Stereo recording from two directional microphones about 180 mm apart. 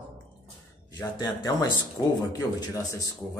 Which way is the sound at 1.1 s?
25° left (ahead or behind).